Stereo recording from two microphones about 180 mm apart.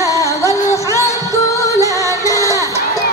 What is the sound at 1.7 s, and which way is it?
Music, 20° right (ahead or behind).